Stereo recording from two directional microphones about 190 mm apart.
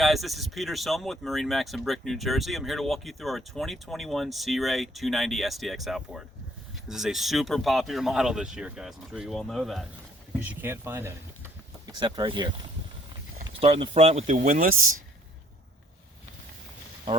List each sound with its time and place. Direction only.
0.0 s speech: centre (ahead or behind); by 12.5 s 25° right (ahead or behind)
13.6 s speech: 30° right (ahead or behind); by 14.8 s 45° right (ahead or behind)